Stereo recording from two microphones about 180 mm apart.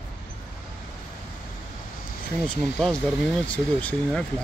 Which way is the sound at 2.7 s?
5° left (ahead or behind).